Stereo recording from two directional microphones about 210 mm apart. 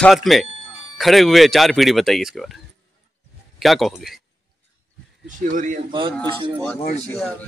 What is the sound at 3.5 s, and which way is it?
Speech, centre (ahead or behind).